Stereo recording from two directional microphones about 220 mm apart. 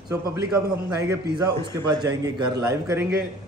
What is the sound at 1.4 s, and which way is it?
A man's voice, 20° right (ahead or behind).